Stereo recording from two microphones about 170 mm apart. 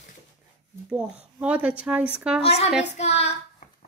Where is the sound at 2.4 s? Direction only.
35° left (ahead or behind).